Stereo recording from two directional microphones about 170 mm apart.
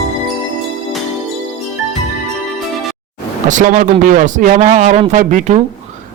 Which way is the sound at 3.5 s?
50° right (ahead or behind).